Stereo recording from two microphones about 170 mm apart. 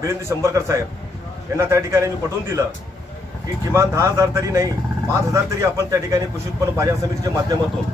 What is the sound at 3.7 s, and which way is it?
A man's voice, 15° right (ahead or behind).